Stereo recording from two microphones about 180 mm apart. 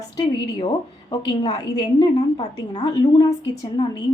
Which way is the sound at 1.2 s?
20° left (ahead or behind).